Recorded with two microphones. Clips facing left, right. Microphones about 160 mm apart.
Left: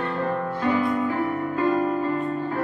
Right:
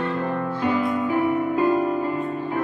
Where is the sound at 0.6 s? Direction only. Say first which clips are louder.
Even; 15° right (ahead or behind).